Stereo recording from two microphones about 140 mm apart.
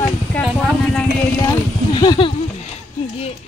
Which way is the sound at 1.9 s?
35° left (ahead or behind).